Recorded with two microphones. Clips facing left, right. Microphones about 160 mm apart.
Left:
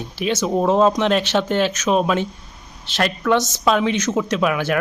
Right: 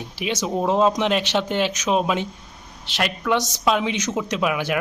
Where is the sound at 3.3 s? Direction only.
15° right (ahead or behind).